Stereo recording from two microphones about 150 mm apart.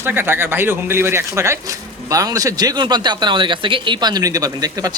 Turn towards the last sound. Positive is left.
turn(degrees=-25)  # may be behind; listen again after turning